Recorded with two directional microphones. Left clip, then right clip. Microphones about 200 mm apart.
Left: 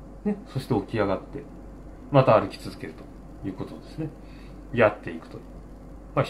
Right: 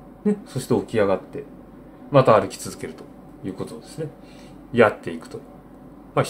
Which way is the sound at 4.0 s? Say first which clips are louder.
Right 3 dB; 20° right (ahead or behind).